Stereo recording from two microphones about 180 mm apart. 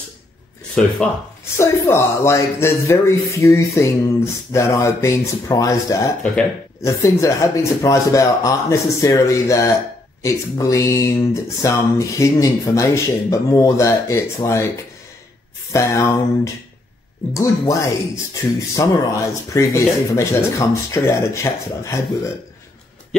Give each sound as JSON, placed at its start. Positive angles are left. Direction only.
{"t": 0.8, "sound": "speech", "side_deg": 5}
{"t": 15.7, "sound": "speech", "side_deg": 15}